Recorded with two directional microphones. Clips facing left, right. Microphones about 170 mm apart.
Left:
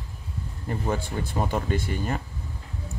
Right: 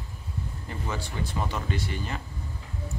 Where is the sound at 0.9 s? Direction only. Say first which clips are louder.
Left 3 dB; 50° left (ahead or behind).